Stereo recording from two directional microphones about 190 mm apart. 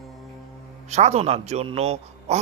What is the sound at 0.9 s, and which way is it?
Speech, 35° right (ahead or behind).